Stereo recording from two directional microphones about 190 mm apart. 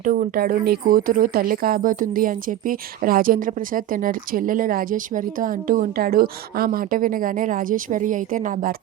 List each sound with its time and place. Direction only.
0.0 s speech: 45° right (ahead or behind)